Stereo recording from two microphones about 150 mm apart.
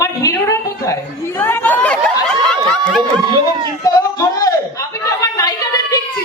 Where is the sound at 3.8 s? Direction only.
25° left (ahead or behind).